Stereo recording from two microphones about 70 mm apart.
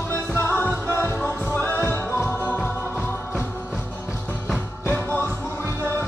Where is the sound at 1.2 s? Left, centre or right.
Centre.